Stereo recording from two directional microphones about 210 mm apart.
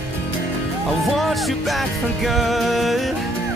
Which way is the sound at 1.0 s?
Centre (ahead or behind).